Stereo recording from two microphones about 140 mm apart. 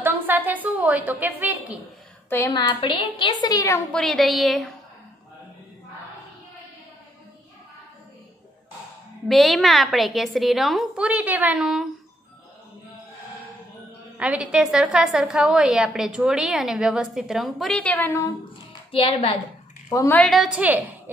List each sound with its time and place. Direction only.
0.0 s a sound: 15° right (ahead or behind)
2.2 s a woman's voice: 20° left (ahead or behind)
2.8 s a woman's voice: 40° left (ahead or behind)
3.9 s a woman's voice: 5° left (ahead or behind)
9.3 s a woman's voice: centre (ahead or behind)
14.1 s a woman's voice: 10° right (ahead or behind); by 18.2 s 15° left (ahead or behind)
18.9 s a woman's voice: 40° left (ahead or behind)
19.9 s a woman's voice: 25° left (ahead or behind)
20.2 s a woman's voice: centre (ahead or behind)